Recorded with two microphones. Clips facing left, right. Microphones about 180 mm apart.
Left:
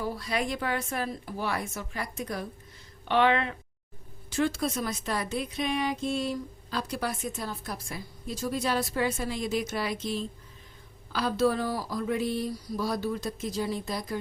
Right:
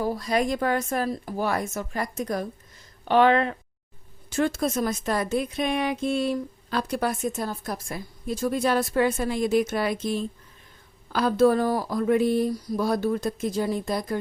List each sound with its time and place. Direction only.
0.0 s speech: 45° right (ahead or behind)